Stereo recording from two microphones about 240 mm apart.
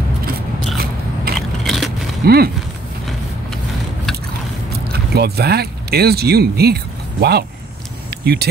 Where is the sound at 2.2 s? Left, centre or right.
Right.